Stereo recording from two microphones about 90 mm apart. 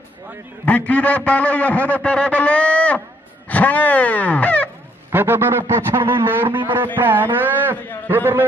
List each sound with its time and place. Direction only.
0.7 s a man's voice: 15° left (ahead or behind)
5.1 s a man's voice: 25° right (ahead or behind)